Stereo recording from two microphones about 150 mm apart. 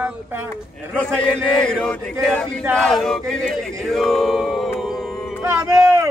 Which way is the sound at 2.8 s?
Centre (ahead or behind).